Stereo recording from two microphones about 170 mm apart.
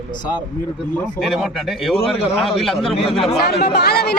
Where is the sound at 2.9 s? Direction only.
35° left (ahead or behind).